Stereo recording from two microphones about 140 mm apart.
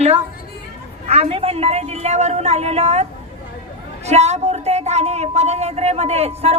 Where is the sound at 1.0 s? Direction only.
50° right (ahead or behind).